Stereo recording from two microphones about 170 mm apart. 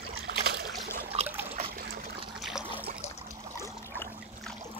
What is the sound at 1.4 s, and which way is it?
Trickle, 35° right (ahead or behind).